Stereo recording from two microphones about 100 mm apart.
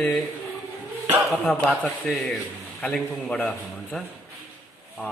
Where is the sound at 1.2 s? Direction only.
5° left (ahead or behind).